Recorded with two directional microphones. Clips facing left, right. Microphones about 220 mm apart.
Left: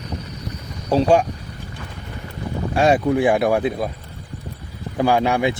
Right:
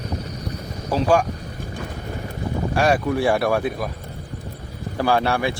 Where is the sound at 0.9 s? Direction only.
25° left (ahead or behind).